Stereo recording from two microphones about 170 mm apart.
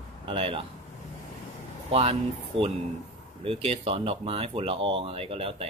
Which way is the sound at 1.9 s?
35° right (ahead or behind).